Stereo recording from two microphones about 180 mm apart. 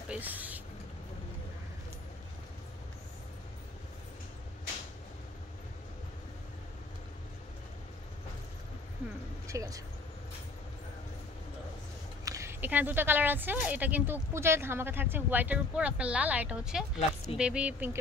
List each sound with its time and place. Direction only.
0.1 s vehicle: 10° right (ahead or behind)
9.5 s speech: 20° right (ahead or behind)
12.3 s speech: 15° right (ahead or behind)